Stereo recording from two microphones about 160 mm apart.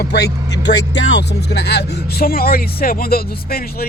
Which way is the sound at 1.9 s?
75° left (ahead or behind).